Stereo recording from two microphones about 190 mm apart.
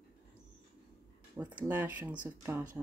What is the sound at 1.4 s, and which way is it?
Speech, 10° right (ahead or behind).